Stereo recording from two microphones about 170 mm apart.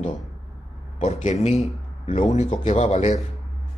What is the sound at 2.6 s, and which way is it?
Speech, 40° left (ahead or behind).